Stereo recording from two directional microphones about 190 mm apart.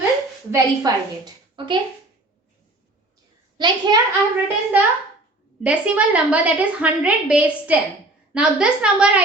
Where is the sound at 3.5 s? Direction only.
25° right (ahead or behind).